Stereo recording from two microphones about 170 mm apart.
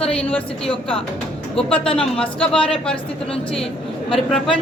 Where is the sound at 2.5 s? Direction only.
5° left (ahead or behind).